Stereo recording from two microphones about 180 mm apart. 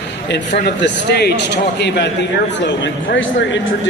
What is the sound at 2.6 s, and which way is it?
Speech, 80° left.